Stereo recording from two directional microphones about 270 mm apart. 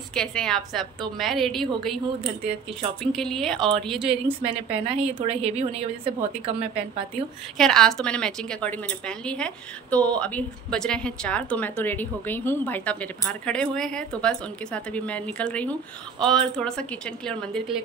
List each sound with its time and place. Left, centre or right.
0.1 s a woman's voice: centre
3.0 s a woman's voice: centre
4.5 s a woman's voice: right
7.5 s a woman's voice: centre